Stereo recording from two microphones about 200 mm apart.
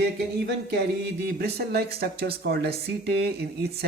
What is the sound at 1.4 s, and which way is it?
Speech, 55° right (ahead or behind).